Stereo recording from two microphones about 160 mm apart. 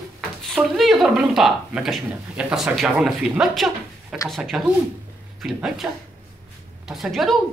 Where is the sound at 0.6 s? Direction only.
Centre (ahead or behind).